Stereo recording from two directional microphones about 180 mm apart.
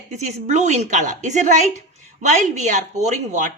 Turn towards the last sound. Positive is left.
turn(degrees=-45)  # may be behind; listen again after turning